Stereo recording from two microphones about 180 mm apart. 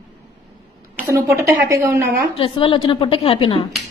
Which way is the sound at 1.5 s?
15° right (ahead or behind).